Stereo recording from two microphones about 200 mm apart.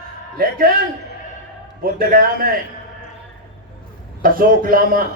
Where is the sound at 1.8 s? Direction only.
45° right (ahead or behind).